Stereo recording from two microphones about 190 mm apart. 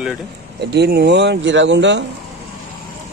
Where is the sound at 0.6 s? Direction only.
60° right (ahead or behind).